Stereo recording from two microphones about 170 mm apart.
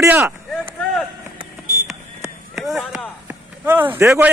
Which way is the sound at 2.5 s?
Centre (ahead or behind).